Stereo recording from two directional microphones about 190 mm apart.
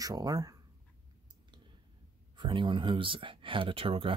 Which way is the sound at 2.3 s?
25° right (ahead or behind).